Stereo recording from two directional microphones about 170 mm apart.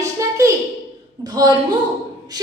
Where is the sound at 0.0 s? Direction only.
20° right (ahead or behind).